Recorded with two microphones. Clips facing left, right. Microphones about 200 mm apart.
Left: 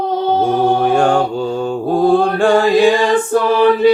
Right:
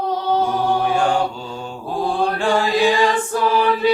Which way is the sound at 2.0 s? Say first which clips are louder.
Left 7 dB; 50° left (ahead or behind).